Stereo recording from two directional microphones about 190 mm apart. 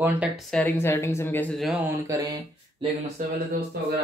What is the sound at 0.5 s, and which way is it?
Speech, 5° left (ahead or behind).